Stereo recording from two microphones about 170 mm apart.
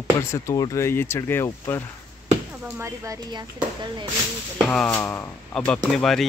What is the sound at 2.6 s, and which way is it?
Speech, 15° right (ahead or behind).